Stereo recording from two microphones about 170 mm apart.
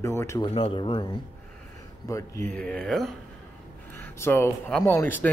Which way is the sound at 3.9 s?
15° left (ahead or behind).